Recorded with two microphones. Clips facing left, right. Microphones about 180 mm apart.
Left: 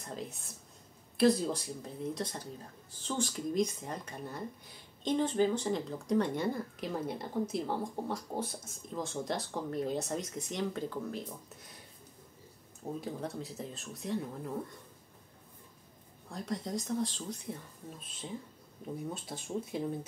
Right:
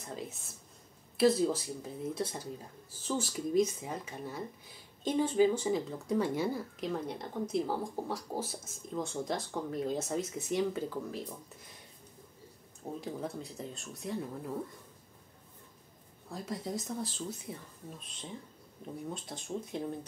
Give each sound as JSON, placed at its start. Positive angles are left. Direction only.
{"t": 0.0, "sound": "speech", "side_deg": 0}
{"t": 13.0, "sound": "speech", "side_deg": 0}
{"t": 16.3, "sound": "speech", "side_deg": -5}
{"t": 19.1, "sound": "speech", "side_deg": 5}